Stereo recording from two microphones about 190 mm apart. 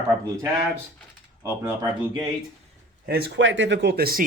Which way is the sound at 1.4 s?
15° right (ahead or behind).